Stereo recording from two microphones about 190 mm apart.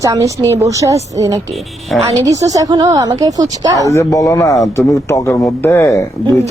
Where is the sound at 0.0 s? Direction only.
15° right (ahead or behind).